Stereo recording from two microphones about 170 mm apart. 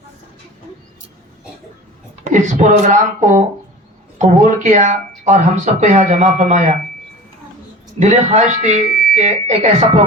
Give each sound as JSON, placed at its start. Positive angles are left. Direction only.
{"t": 2.2, "sound": "speech", "side_deg": -45}
{"t": 7.9, "sound": "speech", "side_deg": -40}
{"t": 8.9, "sound": "fire alarm", "side_deg": 60}
{"t": 9.1, "sound": "speech", "side_deg": -40}